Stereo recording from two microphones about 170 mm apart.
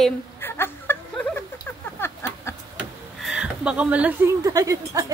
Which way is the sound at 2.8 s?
5° right (ahead or behind).